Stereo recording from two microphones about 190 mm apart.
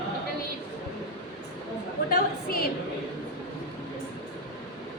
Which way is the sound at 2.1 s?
50° left (ahead or behind).